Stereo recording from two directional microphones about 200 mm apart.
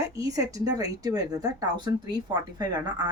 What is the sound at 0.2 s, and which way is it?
Speech, 15° right (ahead or behind).